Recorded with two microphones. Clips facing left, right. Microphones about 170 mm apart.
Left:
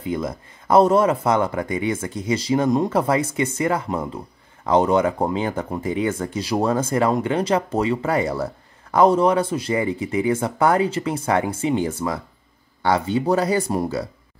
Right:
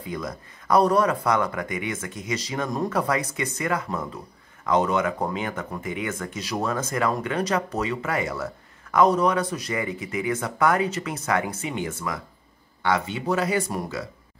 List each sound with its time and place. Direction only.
0.0 s speech: 25° left (ahead or behind)